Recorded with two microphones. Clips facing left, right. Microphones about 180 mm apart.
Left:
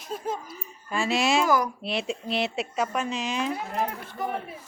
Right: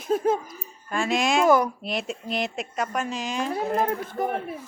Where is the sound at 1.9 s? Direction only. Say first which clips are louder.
Even; centre (ahead or behind).